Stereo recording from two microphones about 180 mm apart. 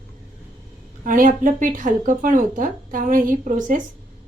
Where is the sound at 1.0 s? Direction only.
45° right (ahead or behind).